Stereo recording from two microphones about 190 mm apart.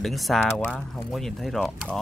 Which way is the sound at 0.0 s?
Centre (ahead or behind).